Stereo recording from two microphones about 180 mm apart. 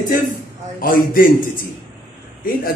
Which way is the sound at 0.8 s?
55° left (ahead or behind).